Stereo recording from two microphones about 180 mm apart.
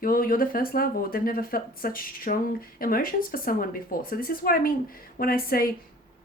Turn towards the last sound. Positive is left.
turn(degrees=55)  # may be behind; listen again after turning